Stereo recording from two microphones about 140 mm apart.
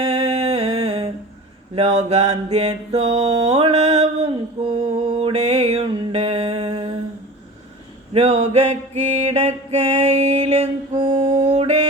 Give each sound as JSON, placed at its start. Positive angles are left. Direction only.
{"t": 0.0, "sound": "a sound", "side_deg": -45}
{"t": 1.7, "sound": "mantra", "side_deg": -45}
{"t": 5.9, "sound": "music", "side_deg": -45}
{"t": 8.1, "sound": "mantra", "side_deg": -45}